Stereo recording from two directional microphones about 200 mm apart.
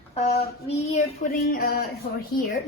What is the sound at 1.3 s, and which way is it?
Speech, 45° left (ahead or behind).